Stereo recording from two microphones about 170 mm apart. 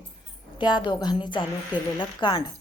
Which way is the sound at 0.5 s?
25° left (ahead or behind).